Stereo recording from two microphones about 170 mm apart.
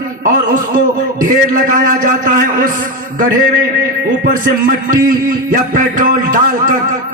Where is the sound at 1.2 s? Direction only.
50° right (ahead or behind).